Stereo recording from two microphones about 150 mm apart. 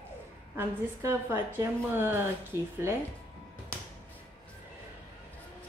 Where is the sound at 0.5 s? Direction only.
20° right (ahead or behind).